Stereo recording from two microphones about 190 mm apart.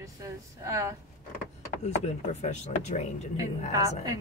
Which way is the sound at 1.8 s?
40° left (ahead or behind).